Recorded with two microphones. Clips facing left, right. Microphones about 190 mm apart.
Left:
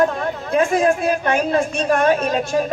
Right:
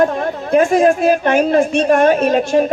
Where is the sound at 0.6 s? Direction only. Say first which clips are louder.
Right 4 dB; 45° right (ahead or behind).